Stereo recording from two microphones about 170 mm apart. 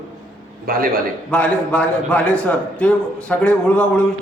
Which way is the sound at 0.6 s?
60° right (ahead or behind).